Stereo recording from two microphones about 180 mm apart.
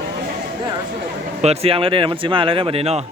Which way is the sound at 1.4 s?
35° right (ahead or behind).